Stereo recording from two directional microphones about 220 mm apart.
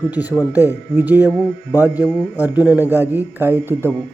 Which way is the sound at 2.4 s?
5° right (ahead or behind).